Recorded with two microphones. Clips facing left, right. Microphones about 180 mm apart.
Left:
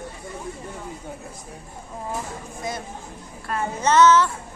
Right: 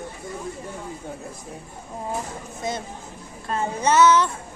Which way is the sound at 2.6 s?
25° right (ahead or behind).